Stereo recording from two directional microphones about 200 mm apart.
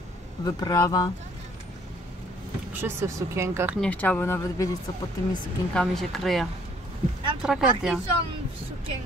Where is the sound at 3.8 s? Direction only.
10° left (ahead or behind).